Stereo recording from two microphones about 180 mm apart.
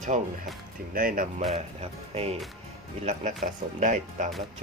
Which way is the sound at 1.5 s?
35° right (ahead or behind).